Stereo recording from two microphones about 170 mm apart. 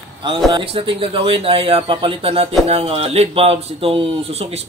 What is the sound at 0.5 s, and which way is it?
Speech, 30° right (ahead or behind).